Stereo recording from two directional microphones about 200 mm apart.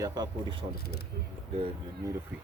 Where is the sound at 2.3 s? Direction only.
10° right (ahead or behind).